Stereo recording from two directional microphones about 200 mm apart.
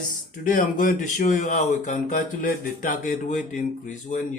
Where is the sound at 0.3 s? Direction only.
40° left (ahead or behind).